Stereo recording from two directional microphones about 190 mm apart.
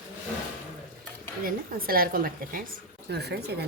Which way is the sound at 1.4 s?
50° right (ahead or behind).